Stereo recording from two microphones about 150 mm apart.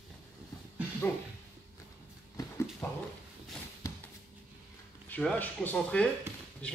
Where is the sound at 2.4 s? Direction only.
25° left (ahead or behind).